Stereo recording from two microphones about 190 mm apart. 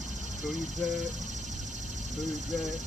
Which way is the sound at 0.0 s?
40° right (ahead or behind).